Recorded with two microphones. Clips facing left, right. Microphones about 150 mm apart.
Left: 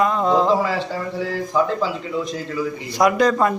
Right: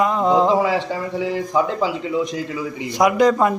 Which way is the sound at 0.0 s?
15° right (ahead or behind).